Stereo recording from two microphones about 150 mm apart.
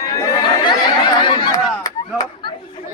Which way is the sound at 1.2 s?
25° left (ahead or behind).